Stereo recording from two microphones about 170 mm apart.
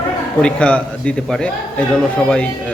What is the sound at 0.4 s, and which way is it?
A man's voice, 5° left (ahead or behind).